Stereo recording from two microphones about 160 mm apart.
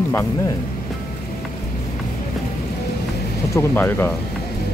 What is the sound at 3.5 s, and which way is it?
Speech, 15° left (ahead or behind).